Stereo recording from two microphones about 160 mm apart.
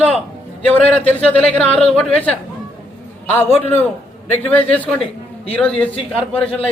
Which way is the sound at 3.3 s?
10° left (ahead or behind).